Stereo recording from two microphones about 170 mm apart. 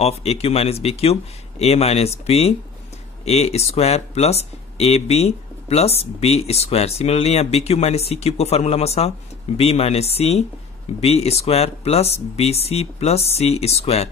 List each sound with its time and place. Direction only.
0.0 s speech: 35° left (ahead or behind)